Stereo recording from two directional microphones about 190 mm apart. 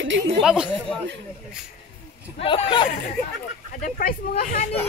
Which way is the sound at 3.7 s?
45° left (ahead or behind).